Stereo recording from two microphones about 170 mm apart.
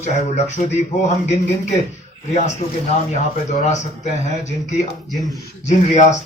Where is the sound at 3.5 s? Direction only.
45° left (ahead or behind).